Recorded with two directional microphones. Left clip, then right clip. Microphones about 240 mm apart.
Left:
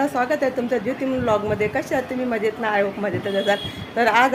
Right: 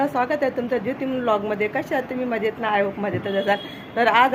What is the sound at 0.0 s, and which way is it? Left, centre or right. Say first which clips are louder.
A woman's voice: left 1 dB; centre.